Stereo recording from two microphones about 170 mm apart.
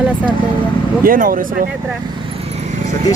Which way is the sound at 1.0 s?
55° right (ahead or behind).